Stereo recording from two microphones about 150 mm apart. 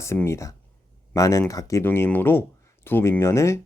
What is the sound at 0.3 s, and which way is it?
Speech, 20° left (ahead or behind).